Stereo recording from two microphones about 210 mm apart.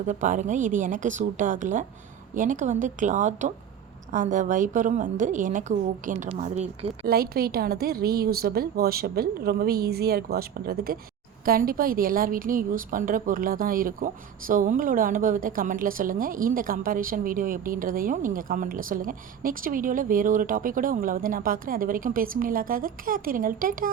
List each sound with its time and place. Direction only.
0.1 s a woman's voice: 35° right (ahead or behind)
7.1 s a woman's voice: 45° right (ahead or behind)